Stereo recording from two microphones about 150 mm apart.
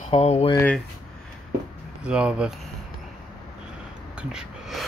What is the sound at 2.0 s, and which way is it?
Speech, 5° right (ahead or behind).